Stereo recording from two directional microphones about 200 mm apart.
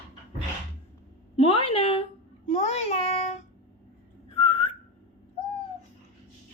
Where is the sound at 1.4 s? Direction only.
30° left (ahead or behind).